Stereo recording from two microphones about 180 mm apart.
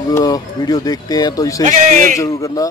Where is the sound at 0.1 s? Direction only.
20° left (ahead or behind).